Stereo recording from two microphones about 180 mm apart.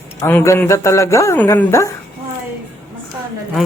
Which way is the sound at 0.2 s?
15° left (ahead or behind).